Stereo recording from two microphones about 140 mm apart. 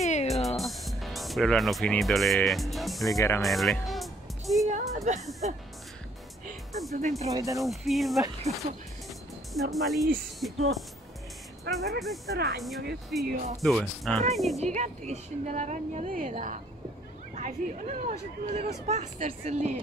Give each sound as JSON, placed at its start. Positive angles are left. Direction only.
{"t": 0.0, "sound": "music", "side_deg": 55}
{"t": 0.3, "sound": "speech", "side_deg": 0}
{"t": 3.1, "sound": "speech", "side_deg": 20}
{"t": 3.4, "sound": "music", "side_deg": 0}
{"t": 4.6, "sound": "a sound", "side_deg": -60}
{"t": 5.4, "sound": "speech", "side_deg": -60}
{"t": 7.0, "sound": "speech", "side_deg": -60}
{"t": 7.2, "sound": "speech", "side_deg": -25}
{"t": 7.6, "sound": "speech", "side_deg": 0}
{"t": 9.5, "sound": "speech", "side_deg": 0}
{"t": 11.7, "sound": "speech", "side_deg": 0}
{"t": 14.6, "sound": "speech", "side_deg": -55}